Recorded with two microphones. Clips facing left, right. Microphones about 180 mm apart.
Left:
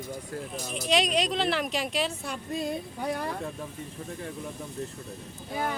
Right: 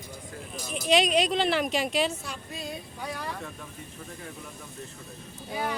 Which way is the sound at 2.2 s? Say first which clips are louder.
Left 6 dB; 55° left (ahead or behind).